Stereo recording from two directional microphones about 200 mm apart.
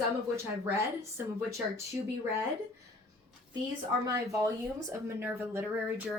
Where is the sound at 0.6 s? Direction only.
15° right (ahead or behind).